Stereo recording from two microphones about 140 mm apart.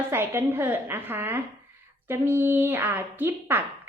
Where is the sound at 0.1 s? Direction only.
15° right (ahead or behind).